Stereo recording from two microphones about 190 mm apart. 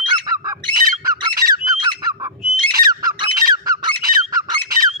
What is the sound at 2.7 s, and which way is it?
Squawk, 20° right (ahead or behind).